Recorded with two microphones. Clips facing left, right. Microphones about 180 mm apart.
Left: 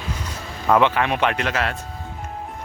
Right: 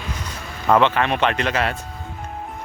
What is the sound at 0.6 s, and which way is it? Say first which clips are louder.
Speech: right 1 dB; 5° left (ahead or behind).